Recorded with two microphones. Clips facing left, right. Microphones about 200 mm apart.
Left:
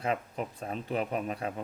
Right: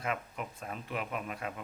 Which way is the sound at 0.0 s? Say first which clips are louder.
Left 5 dB; 30° left (ahead or behind).